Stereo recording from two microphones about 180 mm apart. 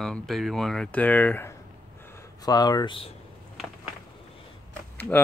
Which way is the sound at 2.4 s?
20° left (ahead or behind).